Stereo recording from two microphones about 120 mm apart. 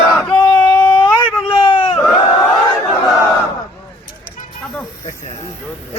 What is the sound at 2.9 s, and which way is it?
Battle cry, centre (ahead or behind).